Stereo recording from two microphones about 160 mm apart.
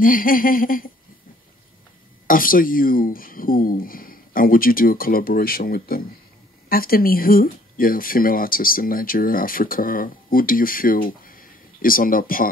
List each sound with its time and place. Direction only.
0.0 s speech: 60° left (ahead or behind)
2.2 s speech: 60° left (ahead or behind)